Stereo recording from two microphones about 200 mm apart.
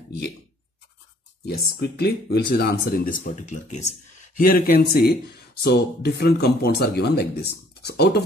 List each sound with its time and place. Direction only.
1.4 s speech: 55° left (ahead or behind)